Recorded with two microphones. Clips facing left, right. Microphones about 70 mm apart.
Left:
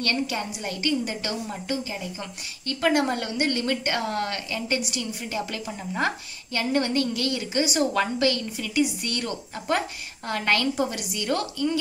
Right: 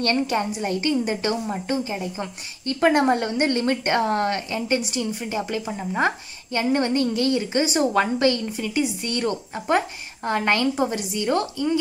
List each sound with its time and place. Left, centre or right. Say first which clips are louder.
0.0 s a woman's voice: right 5 dB; right